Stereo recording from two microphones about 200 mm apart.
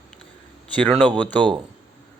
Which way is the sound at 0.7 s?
5° left (ahead or behind).